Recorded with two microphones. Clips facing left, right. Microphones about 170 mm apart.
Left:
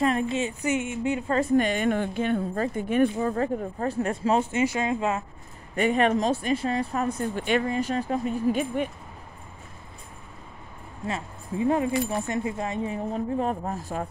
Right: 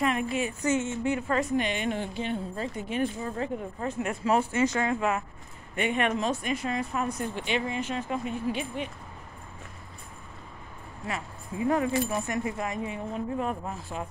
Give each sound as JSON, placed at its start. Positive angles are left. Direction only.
{"t": 0.0, "sound": "speech", "side_deg": 30}
{"t": 1.6, "sound": "speech", "side_deg": 45}
{"t": 3.8, "sound": "speech", "side_deg": 35}
{"t": 5.8, "sound": "speech", "side_deg": 35}
{"t": 7.3, "sound": "speech", "side_deg": 45}
{"t": 11.1, "sound": "speech", "side_deg": 25}